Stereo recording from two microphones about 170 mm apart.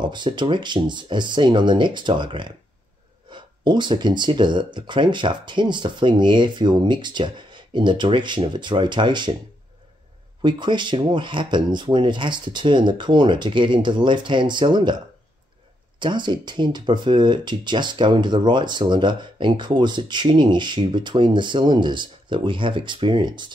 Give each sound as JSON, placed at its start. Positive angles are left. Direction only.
{"t": 0.0, "sound": "speech", "side_deg": -25}
{"t": 10.4, "sound": "speech", "side_deg": -25}
{"t": 16.0, "sound": "speech", "side_deg": -25}